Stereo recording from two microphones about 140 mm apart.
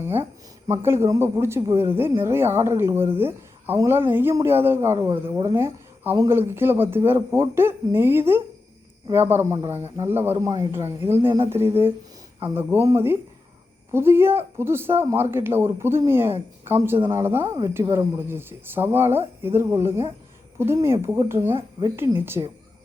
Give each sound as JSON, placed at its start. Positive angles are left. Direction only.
{"t": 0.9, "sound": "speech", "side_deg": -20}
{"t": 21.5, "sound": "speech", "side_deg": -30}
{"t": 21.9, "sound": "speech", "side_deg": -15}